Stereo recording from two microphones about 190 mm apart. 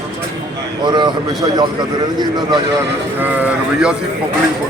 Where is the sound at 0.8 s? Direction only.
25° right (ahead or behind).